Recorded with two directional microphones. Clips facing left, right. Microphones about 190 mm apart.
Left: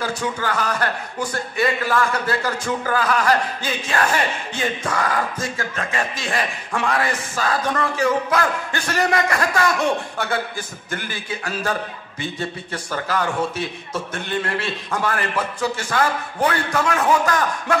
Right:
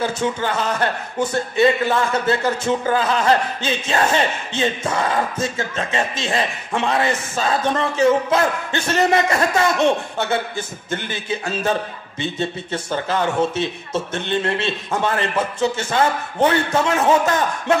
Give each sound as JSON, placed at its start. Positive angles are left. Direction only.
{"t": 0.0, "sound": "a man's voice", "side_deg": -25}